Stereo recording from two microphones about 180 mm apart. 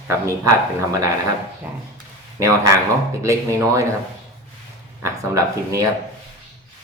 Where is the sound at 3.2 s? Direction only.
15° right (ahead or behind).